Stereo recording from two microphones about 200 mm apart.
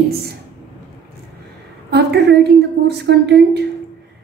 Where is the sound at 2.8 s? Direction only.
55° right (ahead or behind).